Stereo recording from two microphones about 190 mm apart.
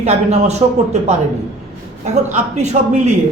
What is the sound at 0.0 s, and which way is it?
Speech, 35° right (ahead or behind).